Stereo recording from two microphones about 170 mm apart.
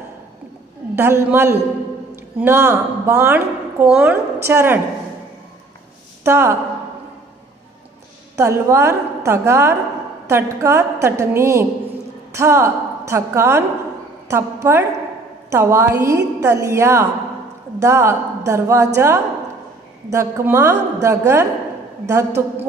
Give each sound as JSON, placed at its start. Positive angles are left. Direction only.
{"t": 0.9, "sound": "a woman's voice", "side_deg": -15}
{"t": 6.2, "sound": "a woman's voice", "side_deg": -15}
{"t": 8.4, "sound": "a woman's voice", "side_deg": -15}